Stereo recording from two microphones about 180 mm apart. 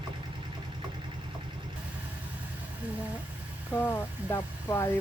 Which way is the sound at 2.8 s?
10° right (ahead or behind).